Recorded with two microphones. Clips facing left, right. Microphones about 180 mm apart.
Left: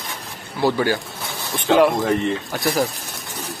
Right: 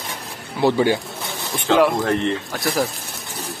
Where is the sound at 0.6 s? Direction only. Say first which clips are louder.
Right 2 dB; 20° right (ahead or behind).